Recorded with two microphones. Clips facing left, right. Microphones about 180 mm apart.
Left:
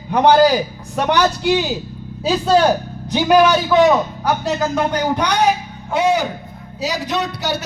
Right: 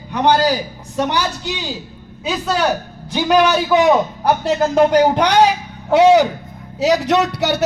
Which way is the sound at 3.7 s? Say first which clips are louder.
Left 2 dB; 10° right (ahead or behind).